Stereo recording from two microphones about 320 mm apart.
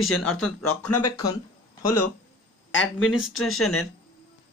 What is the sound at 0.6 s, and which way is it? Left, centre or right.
Speech, left.